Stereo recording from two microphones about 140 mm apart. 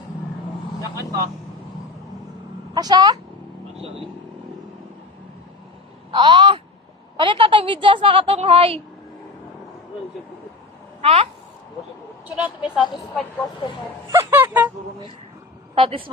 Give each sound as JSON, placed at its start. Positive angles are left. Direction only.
{"t": 2.7, "sound": "a woman's voice", "side_deg": -25}
{"t": 6.1, "sound": "a sound", "side_deg": -35}
{"t": 7.2, "sound": "a woman's voice", "side_deg": -35}
{"t": 11.0, "sound": "speech", "side_deg": -45}
{"t": 12.4, "sound": "speech", "side_deg": 0}
{"t": 14.1, "sound": "music", "side_deg": -15}
{"t": 15.7, "sound": "speech", "side_deg": -40}